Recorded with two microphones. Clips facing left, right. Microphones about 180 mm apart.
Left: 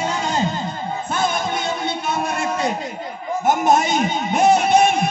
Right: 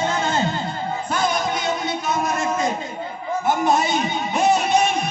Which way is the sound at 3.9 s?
50° left (ahead or behind).